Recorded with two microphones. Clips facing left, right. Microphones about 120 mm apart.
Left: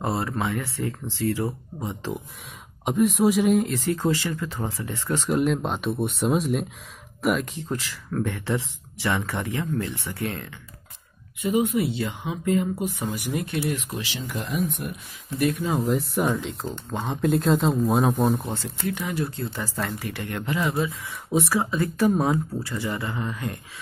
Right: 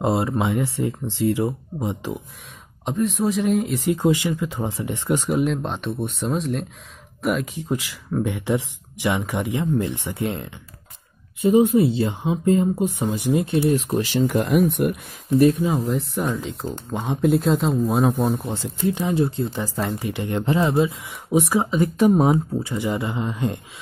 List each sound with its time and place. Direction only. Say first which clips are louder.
0.0 s speech: right 5 dB; 20° right (ahead or behind)
2.8 s speech: left 2 dB; 10° left (ahead or behind)
3.7 s speech: right 4 dB; 15° right (ahead or behind)
5.3 s speech: left 3 dB; centre (ahead or behind)
7.5 s speech: right 4 dB; 10° right (ahead or behind)
11.4 s speech: right 7 dB; 30° right (ahead or behind); by 14.4 s 45° right (ahead or behind)
14.4 s speech: right 5 dB; 65° right (ahead or behind)
15.3 s speech: right 8 dB; 30° right (ahead or behind)
15.6 s speech: right 2 dB; centre (ahead or behind)
16.9 s speech: right 3 dB; 15° right (ahead or behind)
17.2 s speech: right 2 dB; centre (ahead or behind)
18.9 s speech: right 7 dB; 25° right (ahead or behind)